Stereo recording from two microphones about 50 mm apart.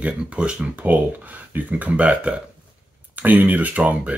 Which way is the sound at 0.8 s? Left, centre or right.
Right.